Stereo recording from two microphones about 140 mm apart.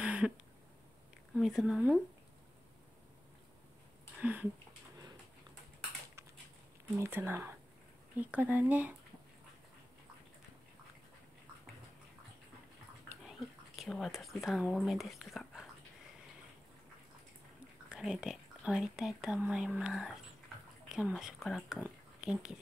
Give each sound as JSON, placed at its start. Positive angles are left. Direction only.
{"t": 0.0, "sound": "a sound", "side_deg": -10}
{"t": 1.3, "sound": "speech", "side_deg": -5}
{"t": 4.2, "sound": "speech", "side_deg": -10}
{"t": 7.0, "sound": "speech", "side_deg": -15}
{"t": 13.3, "sound": "speech", "side_deg": 0}
{"t": 17.8, "sound": "speech", "side_deg": -5}